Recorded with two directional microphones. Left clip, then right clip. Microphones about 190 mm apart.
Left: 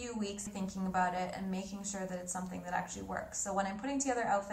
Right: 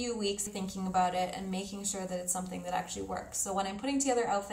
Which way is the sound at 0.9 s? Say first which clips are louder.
Right 4 dB; 45° right (ahead or behind).